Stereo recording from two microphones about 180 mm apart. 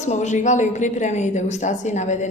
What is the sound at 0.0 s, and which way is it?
A woman's voice, 40° left (ahead or behind).